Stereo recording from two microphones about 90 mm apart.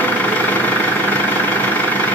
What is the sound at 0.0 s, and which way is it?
Vehicle, 20° left (ahead or behind).